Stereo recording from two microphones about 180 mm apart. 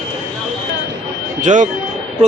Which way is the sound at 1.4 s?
45° right (ahead or behind).